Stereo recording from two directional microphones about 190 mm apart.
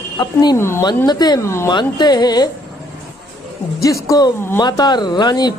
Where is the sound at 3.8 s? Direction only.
20° left (ahead or behind).